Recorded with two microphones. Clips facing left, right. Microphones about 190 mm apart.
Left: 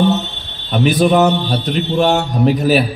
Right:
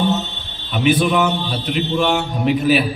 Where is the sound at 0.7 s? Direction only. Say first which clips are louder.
Left 3 dB; 40° left (ahead or behind).